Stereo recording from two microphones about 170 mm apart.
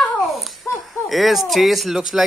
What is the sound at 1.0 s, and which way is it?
Speech, centre (ahead or behind).